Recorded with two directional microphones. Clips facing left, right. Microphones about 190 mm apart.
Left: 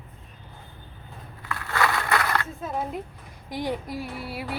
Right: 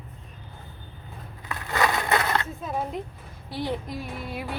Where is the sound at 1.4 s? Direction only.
20° right (ahead or behind).